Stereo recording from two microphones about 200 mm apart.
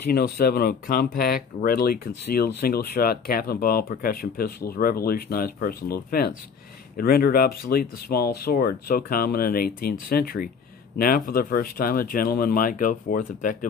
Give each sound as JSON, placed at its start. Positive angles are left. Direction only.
{"t": 0.1, "sound": "speech", "side_deg": 50}